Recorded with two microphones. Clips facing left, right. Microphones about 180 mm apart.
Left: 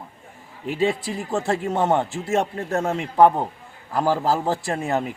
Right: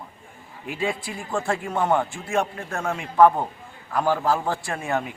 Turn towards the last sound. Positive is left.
turn(degrees=35)  # may be behind; listen again after turning